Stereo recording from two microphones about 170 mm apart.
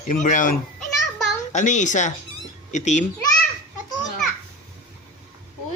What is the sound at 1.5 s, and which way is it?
A woman's voice, 45° left (ahead or behind).